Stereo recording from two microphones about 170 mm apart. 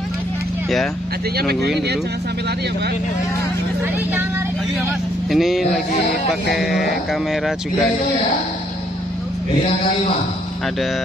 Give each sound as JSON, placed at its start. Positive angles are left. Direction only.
{"t": 1.3, "sound": "speech", "side_deg": -65}
{"t": 3.8, "sound": "speech", "side_deg": -10}
{"t": 5.3, "sound": "speech", "side_deg": 0}